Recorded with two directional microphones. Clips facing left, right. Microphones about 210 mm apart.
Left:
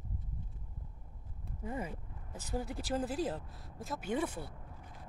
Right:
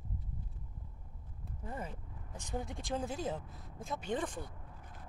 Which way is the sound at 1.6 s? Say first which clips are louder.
Left 4 dB; 10° left (ahead or behind).